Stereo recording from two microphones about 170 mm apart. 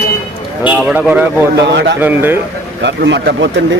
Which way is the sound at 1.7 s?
90° right.